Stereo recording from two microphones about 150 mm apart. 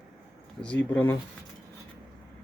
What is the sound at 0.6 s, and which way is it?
Speech, 10° left (ahead or behind).